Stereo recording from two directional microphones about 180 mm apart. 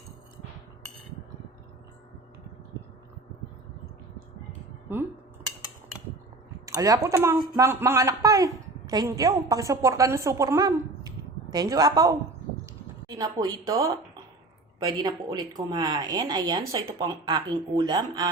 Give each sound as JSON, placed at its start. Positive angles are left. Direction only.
{"t": 4.9, "sound": "speech", "side_deg": -10}
{"t": 6.7, "sound": "a woman's voice", "side_deg": -20}